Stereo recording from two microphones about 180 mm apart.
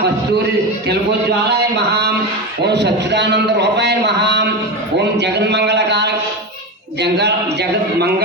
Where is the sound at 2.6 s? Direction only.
70° right (ahead or behind).